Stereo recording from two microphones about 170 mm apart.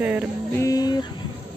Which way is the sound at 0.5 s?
20° left (ahead or behind).